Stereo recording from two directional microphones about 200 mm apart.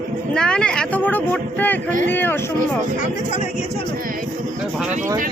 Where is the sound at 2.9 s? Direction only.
40° left (ahead or behind).